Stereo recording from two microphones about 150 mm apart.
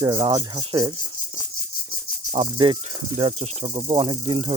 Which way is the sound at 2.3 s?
40° right (ahead or behind).